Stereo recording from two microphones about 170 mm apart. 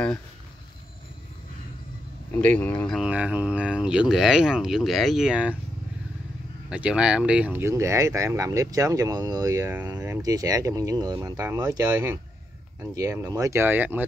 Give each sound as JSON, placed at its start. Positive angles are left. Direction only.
{"t": 2.3, "sound": "speech", "side_deg": 10}
{"t": 3.0, "sound": "speech", "side_deg": -5}
{"t": 6.7, "sound": "speech", "side_deg": -5}